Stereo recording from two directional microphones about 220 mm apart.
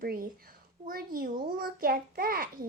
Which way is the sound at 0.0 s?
40° right (ahead or behind).